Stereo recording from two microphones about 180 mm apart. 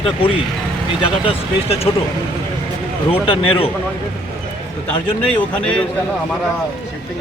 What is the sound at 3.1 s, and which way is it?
Speech, 30° left (ahead or behind).